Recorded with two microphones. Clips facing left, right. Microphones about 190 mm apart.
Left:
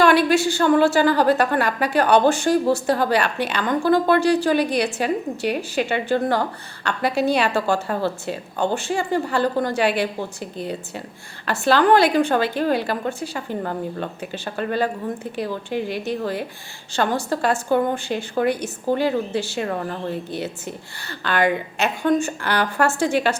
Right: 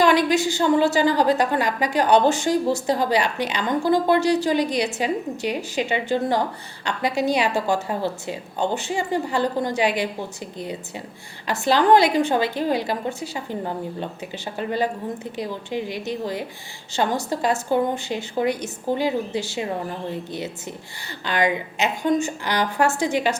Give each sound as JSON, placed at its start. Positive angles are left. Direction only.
{"t": 0.0, "sound": "a woman's voice", "side_deg": -15}